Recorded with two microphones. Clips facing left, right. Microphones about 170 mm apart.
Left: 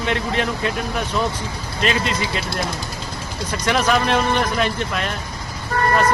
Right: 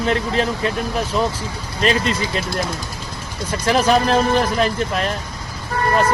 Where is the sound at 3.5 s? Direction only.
30° right (ahead or behind).